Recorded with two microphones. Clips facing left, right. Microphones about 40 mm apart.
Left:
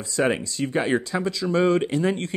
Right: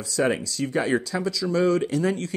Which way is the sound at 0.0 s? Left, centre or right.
Left.